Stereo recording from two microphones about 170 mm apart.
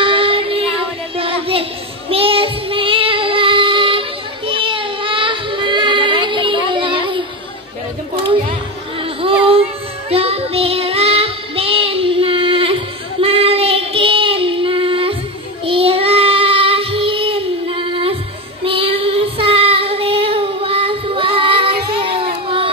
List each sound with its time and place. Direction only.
0.0 s child singing: 30° right (ahead or behind)
9.0 s child singing: 30° right (ahead or behind)
21.9 s a sound: 30° right (ahead or behind)